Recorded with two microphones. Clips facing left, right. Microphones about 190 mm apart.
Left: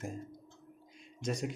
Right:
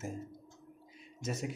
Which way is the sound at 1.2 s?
5° right (ahead or behind).